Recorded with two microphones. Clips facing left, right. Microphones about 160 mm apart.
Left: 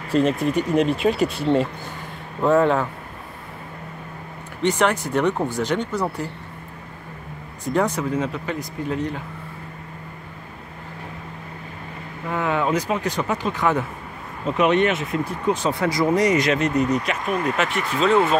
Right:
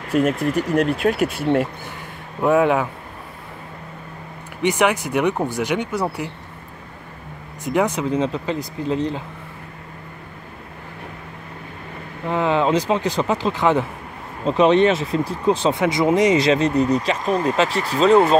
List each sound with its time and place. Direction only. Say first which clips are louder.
0.1 s speech: right 1 dB; 5° right (ahead or behind)
4.6 s speech: right 1 dB; 10° right (ahead or behind)
7.6 s speech: right 2 dB; 20° right (ahead or behind)
12.3 s speech: right 4 dB; 30° right (ahead or behind)